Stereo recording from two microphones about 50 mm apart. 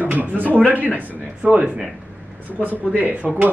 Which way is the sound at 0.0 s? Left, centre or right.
Right.